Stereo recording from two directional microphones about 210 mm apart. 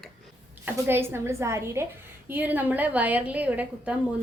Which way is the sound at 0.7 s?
10° right (ahead or behind).